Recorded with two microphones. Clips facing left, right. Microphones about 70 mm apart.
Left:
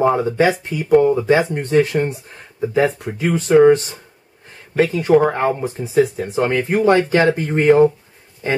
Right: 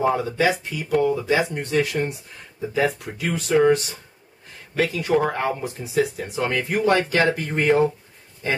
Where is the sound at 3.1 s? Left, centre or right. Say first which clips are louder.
Left 7 dB; left.